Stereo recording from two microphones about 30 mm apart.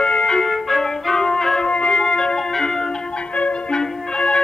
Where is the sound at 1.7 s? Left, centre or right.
Left.